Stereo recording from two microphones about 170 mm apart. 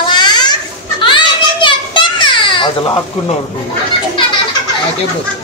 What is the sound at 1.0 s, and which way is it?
Children playing, 30° left (ahead or behind).